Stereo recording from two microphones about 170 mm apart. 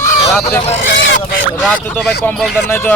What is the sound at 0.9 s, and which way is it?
Goose, 90° left.